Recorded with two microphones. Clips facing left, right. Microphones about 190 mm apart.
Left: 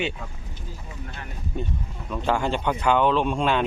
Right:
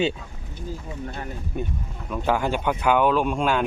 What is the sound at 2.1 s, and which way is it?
Speech, 5° right (ahead or behind).